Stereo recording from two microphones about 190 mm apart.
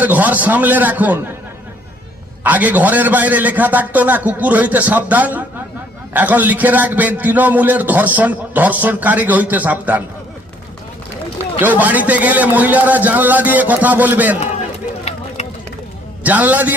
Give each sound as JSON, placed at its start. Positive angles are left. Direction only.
{"t": 0.0, "sound": "a man's voice", "side_deg": -10}
{"t": 2.4, "sound": "a man's voice", "side_deg": -10}
{"t": 11.6, "sound": "a man's voice", "side_deg": -10}
{"t": 15.1, "sound": "run", "side_deg": 35}
{"t": 16.2, "sound": "a man's voice", "side_deg": -10}